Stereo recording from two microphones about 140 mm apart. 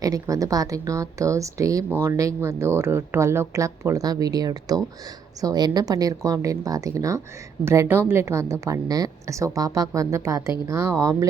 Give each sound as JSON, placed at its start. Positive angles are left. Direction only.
{"t": 0.0, "sound": "speech", "side_deg": -25}